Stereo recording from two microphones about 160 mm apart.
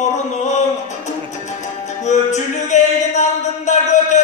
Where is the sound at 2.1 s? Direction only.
50° left (ahead or behind).